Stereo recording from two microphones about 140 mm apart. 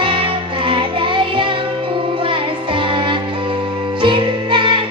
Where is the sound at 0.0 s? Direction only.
40° right (ahead or behind).